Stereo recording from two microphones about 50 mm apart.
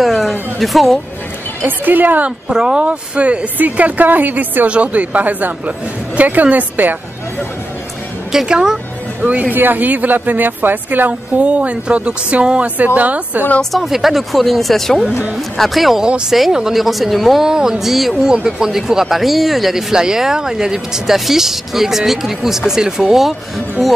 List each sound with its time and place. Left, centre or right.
0.0 s a sound: centre
1.6 s a woman's voice: right
2.5 s a woman's voice: centre; by 4.6 s right
4.6 s a woman's voice: right
8.3 s speech: centre
9.2 s speech: right
9.6 s a woman's voice: right
13.7 s speech: centre
17.5 s speech: centre